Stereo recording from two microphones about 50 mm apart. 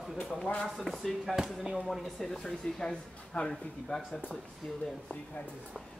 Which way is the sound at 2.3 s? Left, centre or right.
Centre.